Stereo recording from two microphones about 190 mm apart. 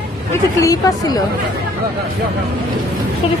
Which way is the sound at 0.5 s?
15° left (ahead or behind).